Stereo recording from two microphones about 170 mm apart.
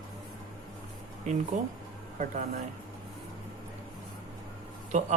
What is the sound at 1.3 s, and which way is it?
Speech, 40° right (ahead or behind).